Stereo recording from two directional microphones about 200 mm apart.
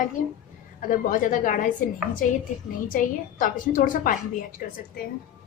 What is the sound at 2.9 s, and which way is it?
A woman's voice, 40° left (ahead or behind).